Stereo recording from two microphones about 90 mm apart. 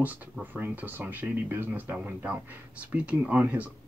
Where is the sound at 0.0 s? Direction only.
15° right (ahead or behind).